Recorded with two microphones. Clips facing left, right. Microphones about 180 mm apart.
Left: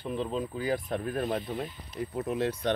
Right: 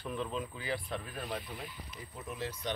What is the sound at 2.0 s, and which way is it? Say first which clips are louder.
Speech: left 12 dB; 60° left (ahead or behind).